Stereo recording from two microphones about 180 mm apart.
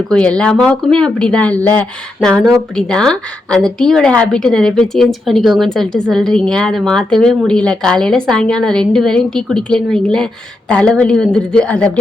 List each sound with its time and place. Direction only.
0.1 s a woman's voice: 5° left (ahead or behind)